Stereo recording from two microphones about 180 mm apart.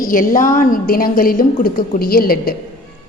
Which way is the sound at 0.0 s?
50° left (ahead or behind).